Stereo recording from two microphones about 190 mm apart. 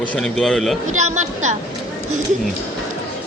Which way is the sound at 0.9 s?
40° right (ahead or behind).